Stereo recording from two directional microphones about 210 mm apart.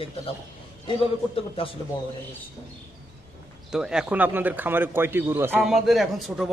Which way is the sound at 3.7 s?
5° right (ahead or behind).